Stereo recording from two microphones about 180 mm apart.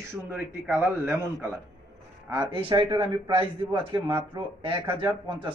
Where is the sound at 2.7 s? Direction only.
25° right (ahead or behind).